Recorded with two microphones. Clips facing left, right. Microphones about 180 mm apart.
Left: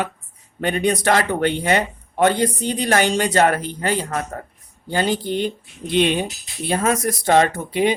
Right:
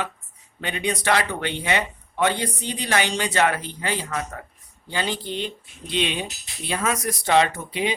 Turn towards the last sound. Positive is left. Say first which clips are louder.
# left 6 dB
turn(degrees=50)  # may be behind; listen again after turning